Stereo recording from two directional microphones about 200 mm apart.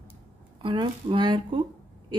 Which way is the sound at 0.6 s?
25° right (ahead or behind).